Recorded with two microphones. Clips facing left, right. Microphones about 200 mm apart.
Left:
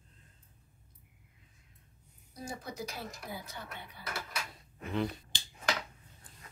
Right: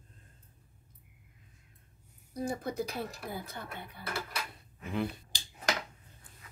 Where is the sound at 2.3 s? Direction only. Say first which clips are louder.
Right 8 dB; 55° right (ahead or behind).